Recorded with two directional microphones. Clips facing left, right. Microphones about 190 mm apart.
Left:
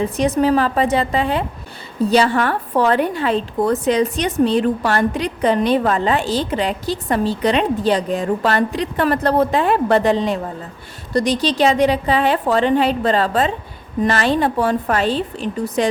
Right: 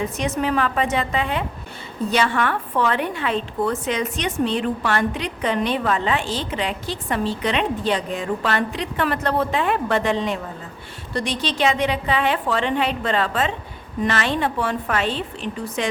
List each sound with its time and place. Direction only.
0.0 s a woman's voice: 35° left (ahead or behind)